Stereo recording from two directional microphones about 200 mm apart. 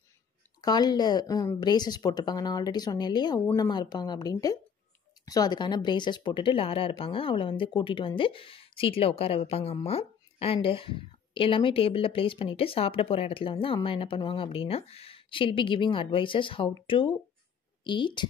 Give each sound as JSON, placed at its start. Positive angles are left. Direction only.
{"t": 0.6, "sound": "a woman's voice", "side_deg": 20}